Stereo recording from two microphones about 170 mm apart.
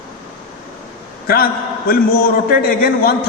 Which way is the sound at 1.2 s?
60° left (ahead or behind).